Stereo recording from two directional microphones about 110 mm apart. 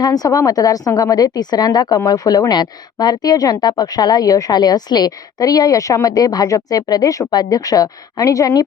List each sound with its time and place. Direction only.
0.0 s speech: 35° left (ahead or behind)